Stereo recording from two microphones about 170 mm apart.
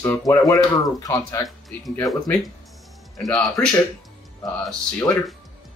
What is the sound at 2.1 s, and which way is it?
Speech, centre (ahead or behind).